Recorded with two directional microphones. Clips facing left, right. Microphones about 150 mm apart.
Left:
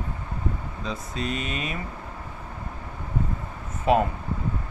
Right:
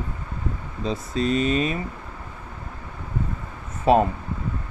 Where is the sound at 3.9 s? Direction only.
35° right (ahead or behind).